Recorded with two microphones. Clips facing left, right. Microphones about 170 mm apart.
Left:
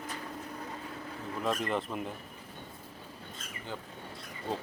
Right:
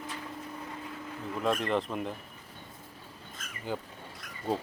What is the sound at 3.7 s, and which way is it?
Speech, 10° right (ahead or behind).